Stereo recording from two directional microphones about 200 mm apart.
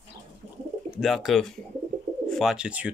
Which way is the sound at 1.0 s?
Centre (ahead or behind).